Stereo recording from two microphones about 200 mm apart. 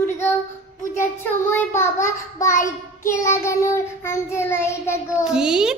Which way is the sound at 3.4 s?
15° left (ahead or behind).